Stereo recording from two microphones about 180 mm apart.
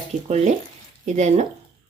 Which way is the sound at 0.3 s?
40° right (ahead or behind).